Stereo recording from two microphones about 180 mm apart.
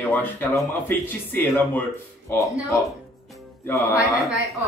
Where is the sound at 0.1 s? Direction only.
10° left (ahead or behind).